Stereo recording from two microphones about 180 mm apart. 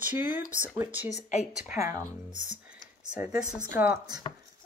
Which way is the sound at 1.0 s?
40° left (ahead or behind).